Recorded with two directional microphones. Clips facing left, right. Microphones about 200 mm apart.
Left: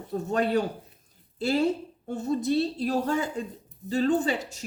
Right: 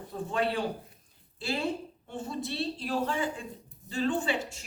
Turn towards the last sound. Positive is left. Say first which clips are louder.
# left 5 dB
turn(degrees=40)  # may be behind; listen again after turning